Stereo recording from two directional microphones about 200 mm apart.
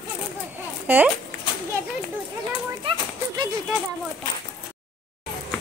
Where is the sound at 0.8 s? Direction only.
10° right (ahead or behind).